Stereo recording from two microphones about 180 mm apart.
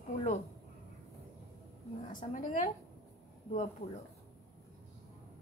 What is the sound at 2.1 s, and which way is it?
Speech, 50° left (ahead or behind).